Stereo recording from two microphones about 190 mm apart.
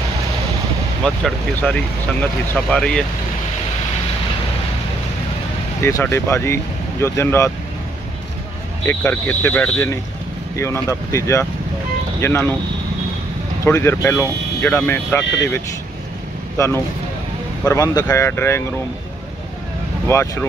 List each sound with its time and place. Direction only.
1.0 s speech: 5° left (ahead or behind)
5.8 s speech: 15° left (ahead or behind)
8.8 s speech: 10° left (ahead or behind)
13.7 s speech: 15° left (ahead or behind)
15.2 s speech: 70° left (ahead or behind)
16.5 s speech: 15° left (ahead or behind)
20.1 s speech: 15° left (ahead or behind)